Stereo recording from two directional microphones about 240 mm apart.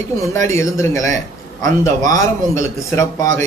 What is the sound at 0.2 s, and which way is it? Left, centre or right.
Speech, centre.